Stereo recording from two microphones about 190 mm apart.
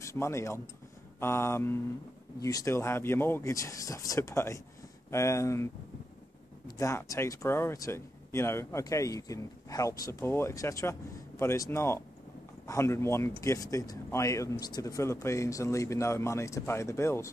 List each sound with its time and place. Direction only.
0.0 s speech: 15° left (ahead or behind)
6.8 s speech: 15° left (ahead or behind)